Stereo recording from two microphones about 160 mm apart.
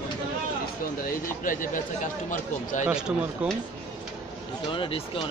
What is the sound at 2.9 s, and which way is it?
Speech, 5° right (ahead or behind).